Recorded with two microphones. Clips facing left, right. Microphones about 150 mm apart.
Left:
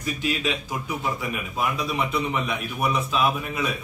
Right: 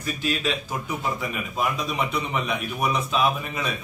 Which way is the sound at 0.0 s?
15° left (ahead or behind).